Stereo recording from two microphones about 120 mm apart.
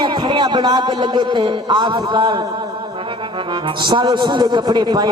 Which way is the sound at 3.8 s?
40° right (ahead or behind).